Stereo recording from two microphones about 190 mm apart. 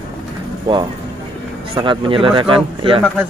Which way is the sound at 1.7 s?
25° right (ahead or behind).